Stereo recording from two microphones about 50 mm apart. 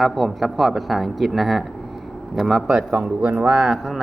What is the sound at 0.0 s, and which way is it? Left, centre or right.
Speech, centre.